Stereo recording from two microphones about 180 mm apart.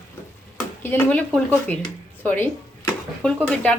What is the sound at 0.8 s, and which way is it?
Speech, 10° left (ahead or behind).